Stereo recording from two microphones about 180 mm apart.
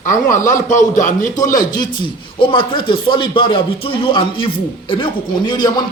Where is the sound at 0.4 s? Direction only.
45° left (ahead or behind).